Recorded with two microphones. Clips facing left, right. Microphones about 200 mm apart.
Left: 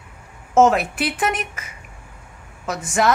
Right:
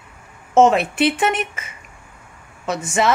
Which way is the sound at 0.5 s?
Centre (ahead or behind).